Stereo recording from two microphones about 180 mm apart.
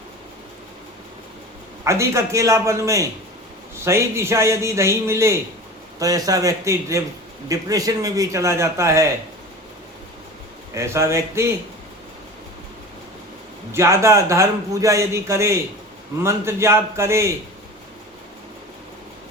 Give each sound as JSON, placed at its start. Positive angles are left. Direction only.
{"t": 1.8, "sound": "a man's voice", "side_deg": -15}
{"t": 10.8, "sound": "a man's voice", "side_deg": -15}
{"t": 13.7, "sound": "a man's voice", "side_deg": -15}